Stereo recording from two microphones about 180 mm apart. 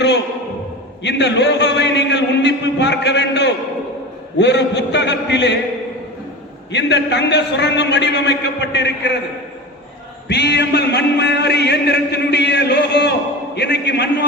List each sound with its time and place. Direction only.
1.0 s a man's voice: 75° left (ahead or behind)
6.7 s a man's voice: 75° left (ahead or behind)
10.2 s a man's voice: 70° left (ahead or behind)